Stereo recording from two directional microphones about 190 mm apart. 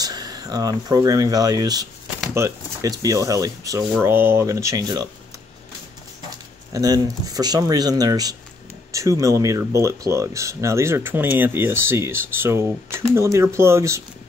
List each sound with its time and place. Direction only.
0.0 s speech: 20° right (ahead or behind)
6.7 s speech: 20° right (ahead or behind)